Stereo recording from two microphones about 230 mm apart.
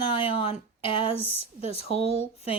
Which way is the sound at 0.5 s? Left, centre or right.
Left.